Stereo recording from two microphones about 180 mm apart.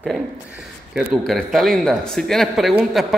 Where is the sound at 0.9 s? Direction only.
Centre (ahead or behind).